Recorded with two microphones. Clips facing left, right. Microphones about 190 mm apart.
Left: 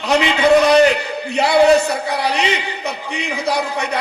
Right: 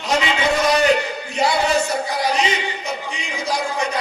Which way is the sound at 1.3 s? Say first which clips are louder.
Left 7 dB; 60° left (ahead or behind).